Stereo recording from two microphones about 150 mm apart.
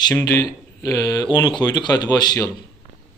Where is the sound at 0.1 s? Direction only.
15° left (ahead or behind).